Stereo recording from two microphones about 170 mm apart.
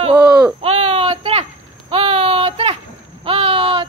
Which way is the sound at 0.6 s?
35° right (ahead or behind).